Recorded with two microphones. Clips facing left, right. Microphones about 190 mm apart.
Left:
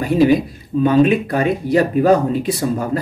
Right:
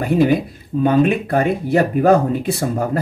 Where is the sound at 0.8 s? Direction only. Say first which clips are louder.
Left 2 dB; 55° right (ahead or behind).